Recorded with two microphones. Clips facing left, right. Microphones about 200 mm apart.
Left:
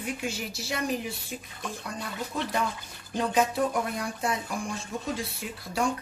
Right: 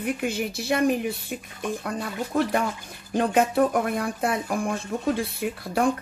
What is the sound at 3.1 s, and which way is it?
Speech, 55° right (ahead or behind).